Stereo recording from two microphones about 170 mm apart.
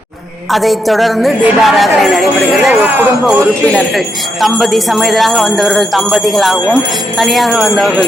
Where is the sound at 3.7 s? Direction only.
Centre (ahead or behind).